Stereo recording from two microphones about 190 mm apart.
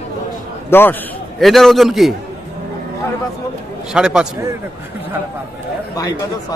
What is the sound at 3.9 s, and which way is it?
Speech, 5° right (ahead or behind).